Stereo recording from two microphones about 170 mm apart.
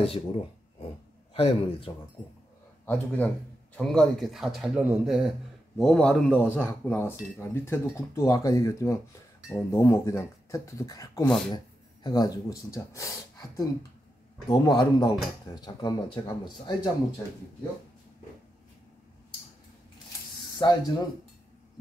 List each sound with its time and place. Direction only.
1.3 s a man's voice: 35° left (ahead or behind)
2.8 s speech: 10° left (ahead or behind)
11.2 s speech: 5° left (ahead or behind)
11.5 s speech: 25° left (ahead or behind)
20.5 s speech: 25° left (ahead or behind)